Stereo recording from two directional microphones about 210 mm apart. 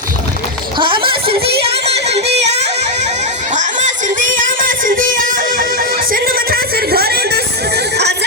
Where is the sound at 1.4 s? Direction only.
50° right (ahead or behind).